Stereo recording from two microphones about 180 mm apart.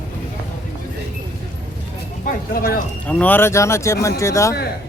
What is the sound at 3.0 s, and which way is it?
Speech, 10° left (ahead or behind).